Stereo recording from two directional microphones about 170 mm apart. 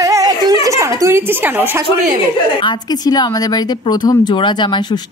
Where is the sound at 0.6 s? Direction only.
20° right (ahead or behind).